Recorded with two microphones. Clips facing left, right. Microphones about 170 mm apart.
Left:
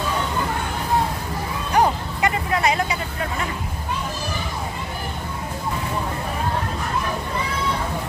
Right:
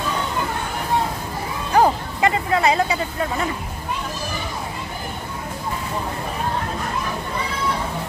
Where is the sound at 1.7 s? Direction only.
30° right (ahead or behind).